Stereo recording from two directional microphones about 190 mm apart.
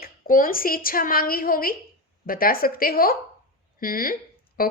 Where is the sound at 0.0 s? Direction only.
45° left (ahead or behind).